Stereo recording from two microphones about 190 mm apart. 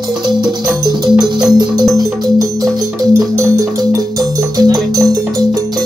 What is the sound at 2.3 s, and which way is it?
Music, 15° right (ahead or behind).